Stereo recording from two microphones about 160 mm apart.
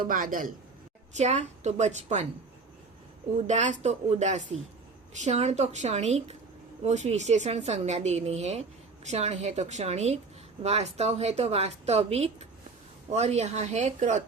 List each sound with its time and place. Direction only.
0.0 s a man's voice: 60° right (ahead or behind)
1.1 s speech: 45° right (ahead or behind)
3.3 s a woman's voice: 45° right (ahead or behind)